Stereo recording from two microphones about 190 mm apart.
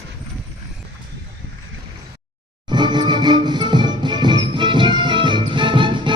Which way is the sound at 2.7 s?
25° right (ahead or behind).